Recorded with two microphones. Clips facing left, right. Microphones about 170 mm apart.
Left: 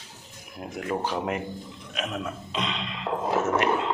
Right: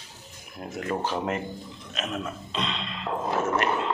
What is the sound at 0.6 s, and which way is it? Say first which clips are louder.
Speech: even; 10° left (ahead or behind).